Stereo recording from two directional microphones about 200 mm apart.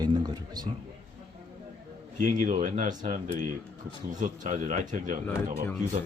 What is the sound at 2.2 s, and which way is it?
Speech, 35° right (ahead or behind).